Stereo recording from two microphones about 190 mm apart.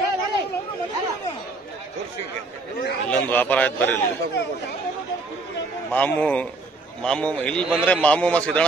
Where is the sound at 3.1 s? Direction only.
10° left (ahead or behind).